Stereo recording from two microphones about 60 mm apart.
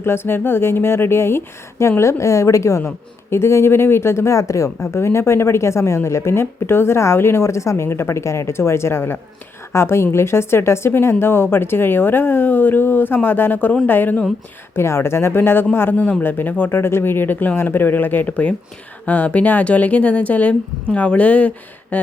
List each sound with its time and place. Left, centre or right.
0.0 s speech: left
2.8 s speech: left
14.8 s speech: left